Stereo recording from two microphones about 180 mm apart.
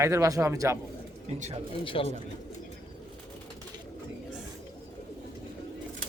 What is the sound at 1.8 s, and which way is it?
Speech, 30° left (ahead or behind).